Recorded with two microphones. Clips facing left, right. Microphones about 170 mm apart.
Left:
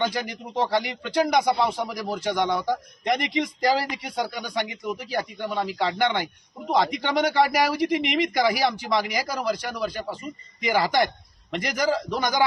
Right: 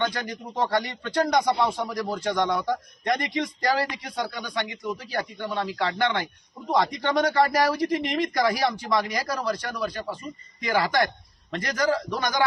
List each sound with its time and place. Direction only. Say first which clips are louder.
0.1 s speech: left 2 dB; 10° left (ahead or behind)
2.3 s speech: left 1 dB; 5° left (ahead or behind)
7.2 s speech: left 1 dB; 5° left (ahead or behind)